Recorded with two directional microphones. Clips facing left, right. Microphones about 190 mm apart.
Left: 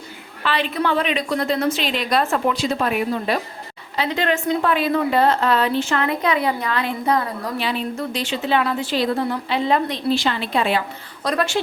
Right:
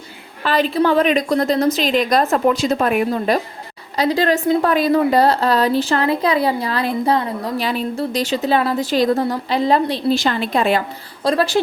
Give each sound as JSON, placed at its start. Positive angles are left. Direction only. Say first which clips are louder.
{"t": 0.4, "sound": "a woman's voice", "louder": "right 5 dB", "side_deg": -40}
{"t": 7.6, "sound": "a woman's voice", "louder": "right 2 dB", "side_deg": -40}
{"t": 11.2, "sound": "a woman's voice", "louder": "right 5 dB", "side_deg": -30}